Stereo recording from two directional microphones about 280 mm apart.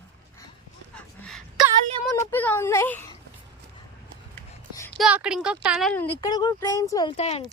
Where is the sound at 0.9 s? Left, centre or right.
Centre.